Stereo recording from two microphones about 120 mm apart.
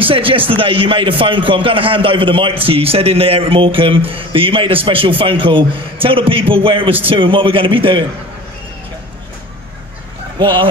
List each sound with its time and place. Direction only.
0.0 s speech: 45° right (ahead or behind)
10.4 s speech: 45° right (ahead or behind)